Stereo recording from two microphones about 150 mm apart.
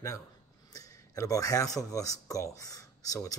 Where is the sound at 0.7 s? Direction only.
25° left (ahead or behind).